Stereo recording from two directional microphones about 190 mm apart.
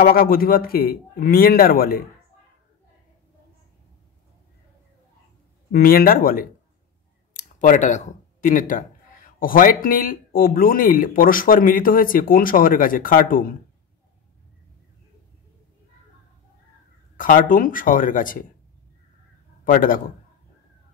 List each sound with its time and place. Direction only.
0.0 s speech: 50° left (ahead or behind)
5.7 s speech: 50° left (ahead or behind)
17.2 s speech: 45° left (ahead or behind)
19.6 s a man's voice: 45° left (ahead or behind)